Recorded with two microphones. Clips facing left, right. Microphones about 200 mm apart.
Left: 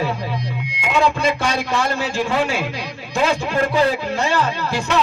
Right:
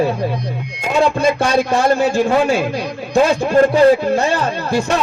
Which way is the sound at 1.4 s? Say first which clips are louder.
Right 6 dB; 50° right (ahead or behind).